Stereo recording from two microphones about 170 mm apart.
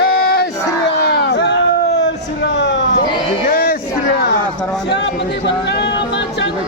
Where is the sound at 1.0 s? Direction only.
85° left.